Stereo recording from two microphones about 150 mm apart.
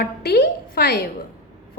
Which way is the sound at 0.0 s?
90° left.